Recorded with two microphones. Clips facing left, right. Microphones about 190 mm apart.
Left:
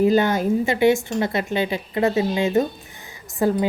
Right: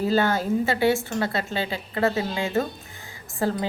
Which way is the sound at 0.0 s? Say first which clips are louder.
Left 5 dB; 15° left (ahead or behind).